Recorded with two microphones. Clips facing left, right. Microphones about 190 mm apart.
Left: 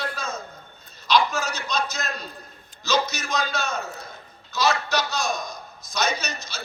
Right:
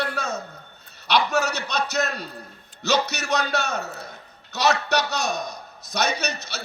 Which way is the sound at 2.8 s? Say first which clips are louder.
Right 1 dB; 70° right (ahead or behind).